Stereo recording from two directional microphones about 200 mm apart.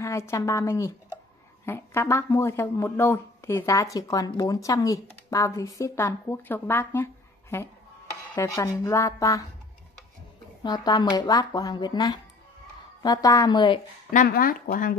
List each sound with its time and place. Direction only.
0.0 s speech: 15° left (ahead or behind)
10.6 s speech: 20° left (ahead or behind)
14.1 s speech: 45° left (ahead or behind)